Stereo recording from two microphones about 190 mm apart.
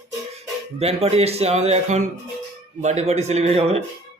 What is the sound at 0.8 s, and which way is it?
Speech, 30° right (ahead or behind).